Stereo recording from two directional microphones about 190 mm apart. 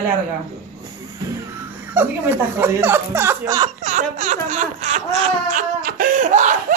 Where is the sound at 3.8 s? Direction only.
40° right (ahead or behind).